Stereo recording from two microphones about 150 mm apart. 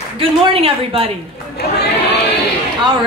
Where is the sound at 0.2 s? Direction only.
40° right (ahead or behind).